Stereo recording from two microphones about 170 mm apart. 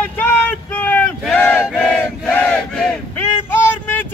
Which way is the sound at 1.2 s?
10° left (ahead or behind).